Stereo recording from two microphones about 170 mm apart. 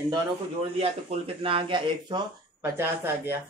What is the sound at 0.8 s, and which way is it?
Speech, 35° right (ahead or behind).